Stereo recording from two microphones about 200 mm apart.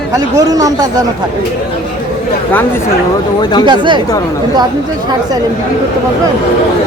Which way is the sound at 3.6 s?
25° right (ahead or behind).